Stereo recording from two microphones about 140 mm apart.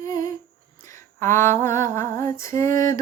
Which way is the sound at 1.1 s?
15° left (ahead or behind).